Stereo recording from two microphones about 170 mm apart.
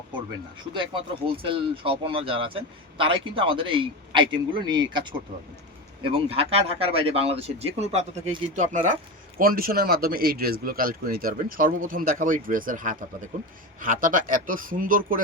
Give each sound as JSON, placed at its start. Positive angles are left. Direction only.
{"t": 1.4, "sound": "a man's voice", "side_deg": -30}
{"t": 9.4, "sound": "speech", "side_deg": -60}